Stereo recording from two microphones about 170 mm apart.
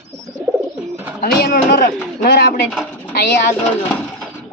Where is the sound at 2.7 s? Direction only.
5° left (ahead or behind).